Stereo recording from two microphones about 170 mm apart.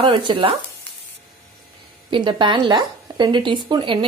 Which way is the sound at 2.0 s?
30° right (ahead or behind).